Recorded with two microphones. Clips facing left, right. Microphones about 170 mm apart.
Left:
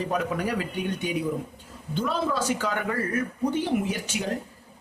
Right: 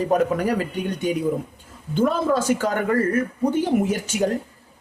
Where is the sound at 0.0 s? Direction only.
45° right (ahead or behind).